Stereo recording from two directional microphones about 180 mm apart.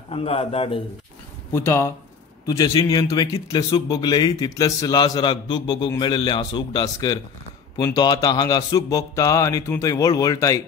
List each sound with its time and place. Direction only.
0.1 s a man's voice: 30° left (ahead or behind)
1.5 s a man's voice: 15° left (ahead or behind)